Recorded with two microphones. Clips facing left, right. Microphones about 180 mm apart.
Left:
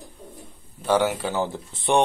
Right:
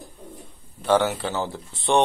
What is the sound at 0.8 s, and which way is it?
Speech, 10° left (ahead or behind).